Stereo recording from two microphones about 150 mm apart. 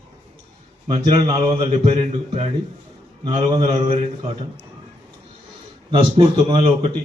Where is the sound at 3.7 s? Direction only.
45° right (ahead or behind).